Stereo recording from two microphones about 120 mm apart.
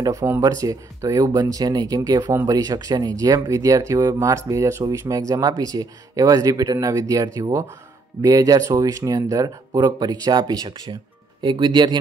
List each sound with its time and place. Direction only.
0.0 s speech: 30° right (ahead or behind)